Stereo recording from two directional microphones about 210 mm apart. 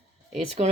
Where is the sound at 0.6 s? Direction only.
30° right (ahead or behind).